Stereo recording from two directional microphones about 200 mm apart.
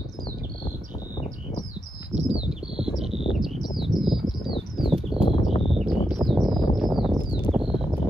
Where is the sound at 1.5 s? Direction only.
35° left (ahead or behind).